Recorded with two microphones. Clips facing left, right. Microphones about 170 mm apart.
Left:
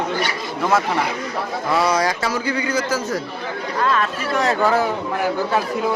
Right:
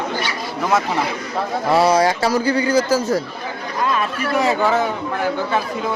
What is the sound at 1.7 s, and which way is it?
A man's voice, 30° right (ahead or behind).